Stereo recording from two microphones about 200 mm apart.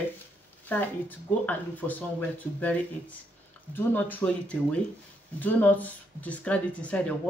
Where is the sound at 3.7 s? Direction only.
10° left (ahead or behind).